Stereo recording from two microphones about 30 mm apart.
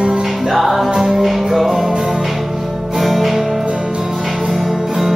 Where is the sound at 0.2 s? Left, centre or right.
Centre.